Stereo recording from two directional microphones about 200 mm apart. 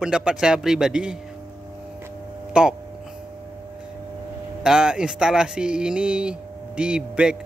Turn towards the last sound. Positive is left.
turn(degrees=-5)  # may be behind; listen again after turning